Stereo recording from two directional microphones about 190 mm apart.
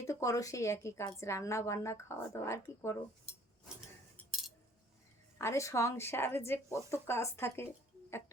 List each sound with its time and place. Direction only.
0.0 s speech: 15° left (ahead or behind)
4.2 s cutlery: centre (ahead or behind)
5.4 s speech: 15° left (ahead or behind)